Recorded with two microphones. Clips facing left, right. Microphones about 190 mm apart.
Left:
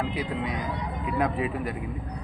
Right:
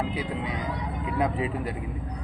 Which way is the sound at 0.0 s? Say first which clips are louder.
Left 1 dB; 25° right (ahead or behind).